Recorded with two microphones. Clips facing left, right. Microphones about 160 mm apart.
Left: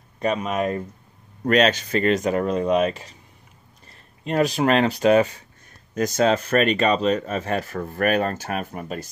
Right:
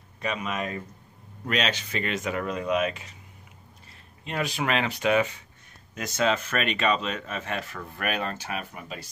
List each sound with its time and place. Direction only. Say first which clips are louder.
0.2 s speech: left 8 dB; 40° left (ahead or behind)
4.2 s speech: left 9 dB; 40° left (ahead or behind)